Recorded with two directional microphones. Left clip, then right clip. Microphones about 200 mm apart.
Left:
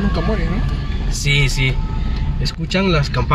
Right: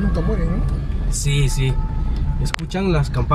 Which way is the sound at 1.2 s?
35° right (ahead or behind).